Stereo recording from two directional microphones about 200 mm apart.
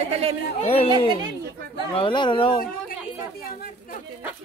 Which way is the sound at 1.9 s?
25° left (ahead or behind).